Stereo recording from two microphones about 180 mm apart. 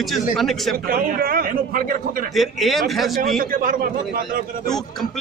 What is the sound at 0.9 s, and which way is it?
A man's voice, 50° right (ahead or behind).